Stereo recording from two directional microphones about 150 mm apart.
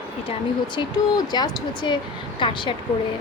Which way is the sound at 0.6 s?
30° left (ahead or behind).